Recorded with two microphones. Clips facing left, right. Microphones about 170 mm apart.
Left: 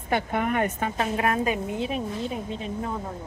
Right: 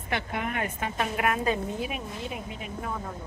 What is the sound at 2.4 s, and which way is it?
Speech, 30° left (ahead or behind).